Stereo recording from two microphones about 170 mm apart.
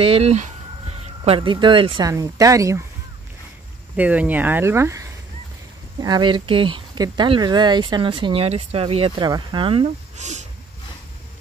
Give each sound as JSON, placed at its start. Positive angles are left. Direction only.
{"t": 0.0, "sound": "speech", "side_deg": -35}
{"t": 3.9, "sound": "speech", "side_deg": -10}
{"t": 10.1, "sound": "speech", "side_deg": -45}